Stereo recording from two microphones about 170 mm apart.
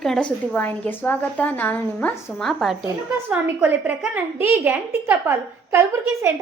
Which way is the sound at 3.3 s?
10° right (ahead or behind).